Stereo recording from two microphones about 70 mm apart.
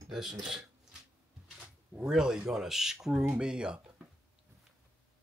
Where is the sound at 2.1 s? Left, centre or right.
Centre.